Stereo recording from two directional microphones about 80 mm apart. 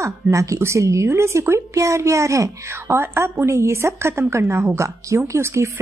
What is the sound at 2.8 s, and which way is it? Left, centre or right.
A woman's voice, right.